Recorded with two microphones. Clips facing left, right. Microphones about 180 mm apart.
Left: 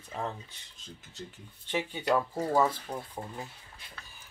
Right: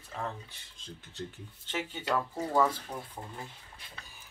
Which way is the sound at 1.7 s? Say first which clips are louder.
Left 4 dB; 15° left (ahead or behind).